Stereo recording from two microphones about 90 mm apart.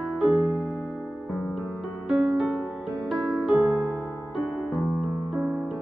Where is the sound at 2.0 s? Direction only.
10° right (ahead or behind).